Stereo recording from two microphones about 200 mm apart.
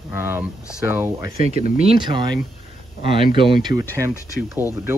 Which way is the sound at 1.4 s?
30° right (ahead or behind).